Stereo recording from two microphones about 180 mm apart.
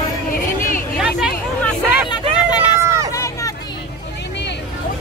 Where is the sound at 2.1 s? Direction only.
20° left (ahead or behind).